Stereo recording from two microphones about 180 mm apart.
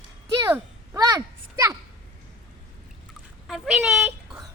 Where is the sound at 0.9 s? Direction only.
20° right (ahead or behind).